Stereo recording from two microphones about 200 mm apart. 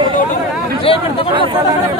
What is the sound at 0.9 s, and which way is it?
Speech, 30° left (ahead or behind).